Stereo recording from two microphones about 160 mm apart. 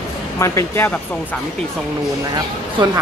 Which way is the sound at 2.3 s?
25° right (ahead or behind).